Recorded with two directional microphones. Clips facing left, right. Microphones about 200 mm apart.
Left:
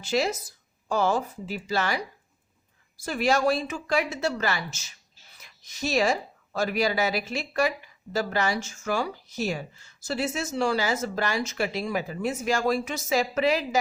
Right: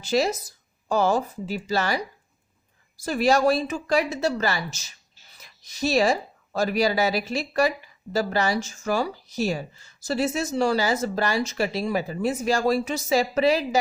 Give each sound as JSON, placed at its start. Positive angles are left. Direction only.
{"t": 0.0, "sound": "speech", "side_deg": -40}
{"t": 3.0, "sound": "speech", "side_deg": -35}